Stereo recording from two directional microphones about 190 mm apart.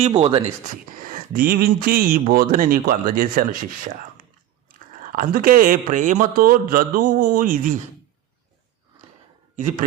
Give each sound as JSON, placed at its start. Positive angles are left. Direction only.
{"t": 0.0, "sound": "speech", "side_deg": -25}
{"t": 0.7, "sound": "speech", "side_deg": -45}
{"t": 5.1, "sound": "speech", "side_deg": -50}
{"t": 9.6, "sound": "a man's voice", "side_deg": -40}